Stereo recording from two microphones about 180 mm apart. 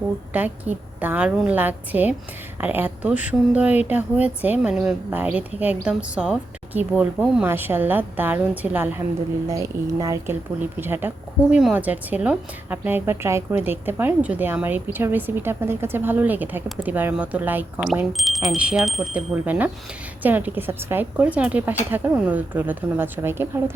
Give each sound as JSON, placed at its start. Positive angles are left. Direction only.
{"t": 0.3, "sound": "speech", "side_deg": -10}